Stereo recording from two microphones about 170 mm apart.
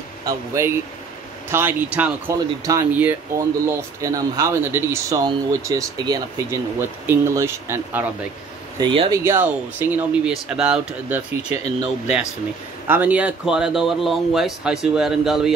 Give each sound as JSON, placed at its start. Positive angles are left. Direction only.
{"t": 0.2, "sound": "speech", "side_deg": -20}
{"t": 8.7, "sound": "speech", "side_deg": -30}
{"t": 9.1, "sound": "speech", "side_deg": -15}
{"t": 12.8, "sound": "speech", "side_deg": -10}